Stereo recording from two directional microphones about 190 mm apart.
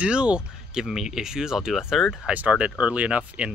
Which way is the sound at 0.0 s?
5° right (ahead or behind).